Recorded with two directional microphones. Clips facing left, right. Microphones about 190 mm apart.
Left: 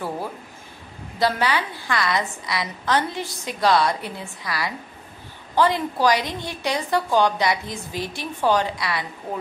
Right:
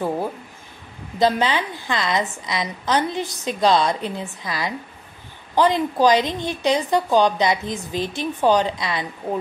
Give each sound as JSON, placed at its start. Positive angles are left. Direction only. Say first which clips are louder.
{"t": 1.2, "sound": "a woman's voice", "louder": "right 3 dB", "side_deg": -20}